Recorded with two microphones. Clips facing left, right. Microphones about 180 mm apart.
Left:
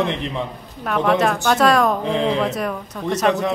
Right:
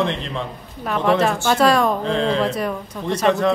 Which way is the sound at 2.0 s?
15° left (ahead or behind).